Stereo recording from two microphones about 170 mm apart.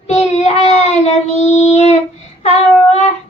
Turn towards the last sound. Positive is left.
turn(degrees=40)  # may be behind; listen again after turning